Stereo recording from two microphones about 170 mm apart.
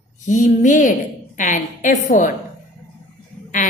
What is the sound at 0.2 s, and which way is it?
A woman's voice, 45° left (ahead or behind).